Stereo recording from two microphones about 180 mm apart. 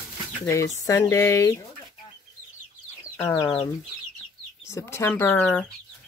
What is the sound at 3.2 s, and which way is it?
Speech, 15° left (ahead or behind).